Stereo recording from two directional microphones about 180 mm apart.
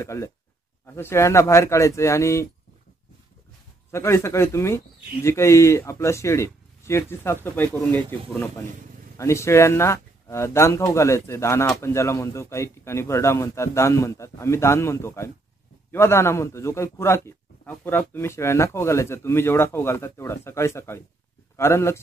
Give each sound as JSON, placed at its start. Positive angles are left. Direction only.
{"t": 0.0, "sound": "speech", "side_deg": 15}
{"t": 3.9, "sound": "speech", "side_deg": 15}